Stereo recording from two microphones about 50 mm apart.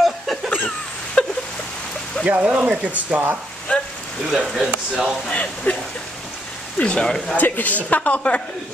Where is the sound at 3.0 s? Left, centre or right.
Right.